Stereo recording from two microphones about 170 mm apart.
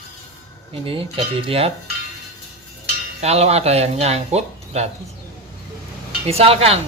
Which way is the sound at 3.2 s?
40° right (ahead or behind).